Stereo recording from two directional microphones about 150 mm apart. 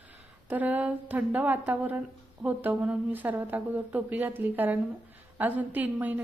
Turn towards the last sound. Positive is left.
turn(degrees=-10)  # may be behind; listen again after turning